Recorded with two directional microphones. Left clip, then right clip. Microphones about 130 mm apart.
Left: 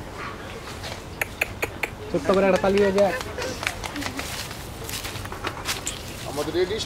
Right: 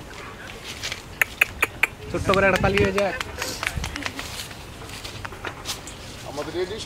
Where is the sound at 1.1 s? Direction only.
35° right (ahead or behind).